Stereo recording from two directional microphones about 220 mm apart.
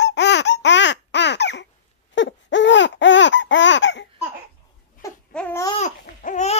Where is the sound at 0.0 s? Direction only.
50° left (ahead or behind).